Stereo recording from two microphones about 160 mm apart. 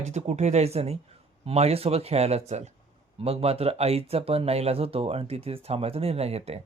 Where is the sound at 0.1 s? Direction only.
45° right (ahead or behind).